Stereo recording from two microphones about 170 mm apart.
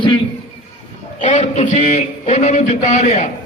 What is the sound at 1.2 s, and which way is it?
A man's voice, 45° left (ahead or behind).